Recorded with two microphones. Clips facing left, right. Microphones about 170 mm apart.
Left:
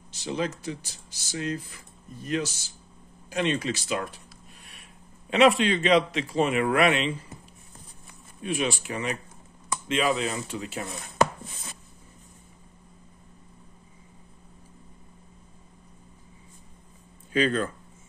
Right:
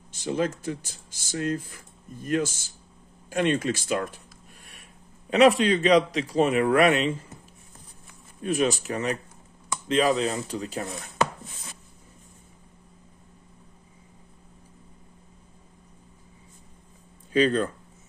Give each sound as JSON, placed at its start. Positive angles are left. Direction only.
{"t": 0.1, "sound": "speech", "side_deg": -50}
{"t": 3.3, "sound": "a sound", "side_deg": -50}
{"t": 5.6, "sound": "speech", "side_deg": -40}
{"t": 8.4, "sound": "speech", "side_deg": -40}
{"t": 17.3, "sound": "speech", "side_deg": -35}